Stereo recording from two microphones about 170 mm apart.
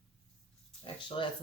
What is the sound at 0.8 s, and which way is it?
Speech, 30° left (ahead or behind).